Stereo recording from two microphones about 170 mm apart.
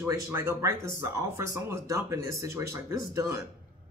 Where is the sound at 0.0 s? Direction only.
15° right (ahead or behind).